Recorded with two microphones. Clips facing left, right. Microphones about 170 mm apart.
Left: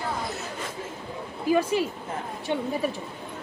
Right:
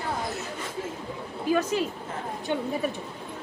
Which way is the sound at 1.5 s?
10° left (ahead or behind).